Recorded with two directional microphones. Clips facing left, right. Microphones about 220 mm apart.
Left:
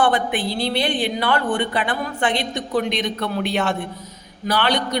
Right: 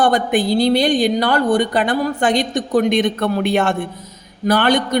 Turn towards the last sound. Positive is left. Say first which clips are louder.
# right 6 dB
turn(degrees=-50)  # may be behind; listen again after turning